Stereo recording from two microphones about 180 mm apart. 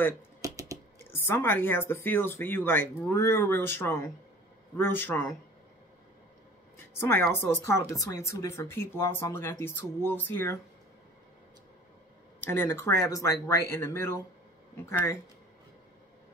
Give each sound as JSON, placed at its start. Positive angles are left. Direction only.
{"t": 0.4, "sound": "a sound", "side_deg": -20}
{"t": 1.1, "sound": "a woman's voice", "side_deg": 10}
{"t": 7.0, "sound": "a woman's voice", "side_deg": 15}
{"t": 12.4, "sound": "a woman's voice", "side_deg": 10}